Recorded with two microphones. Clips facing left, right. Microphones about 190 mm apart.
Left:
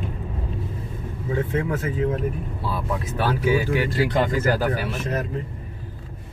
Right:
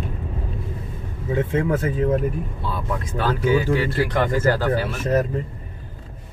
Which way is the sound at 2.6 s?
5° left (ahead or behind).